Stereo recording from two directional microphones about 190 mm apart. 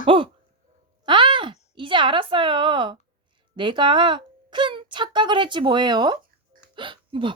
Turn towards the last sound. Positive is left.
turn(degrees=-25)  # may be behind; listen again after turning